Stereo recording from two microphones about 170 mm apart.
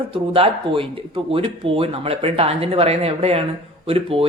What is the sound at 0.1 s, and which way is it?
Speech, 30° right (ahead or behind).